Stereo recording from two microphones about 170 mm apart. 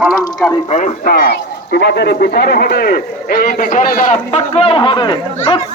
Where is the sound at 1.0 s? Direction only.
60° left (ahead or behind).